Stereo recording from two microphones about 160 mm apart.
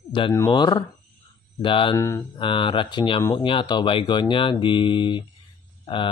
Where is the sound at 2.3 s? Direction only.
30° left (ahead or behind).